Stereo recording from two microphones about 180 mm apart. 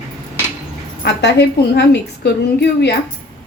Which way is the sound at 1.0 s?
75° left (ahead or behind).